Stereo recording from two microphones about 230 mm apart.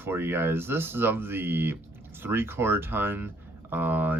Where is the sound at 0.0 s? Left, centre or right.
Centre.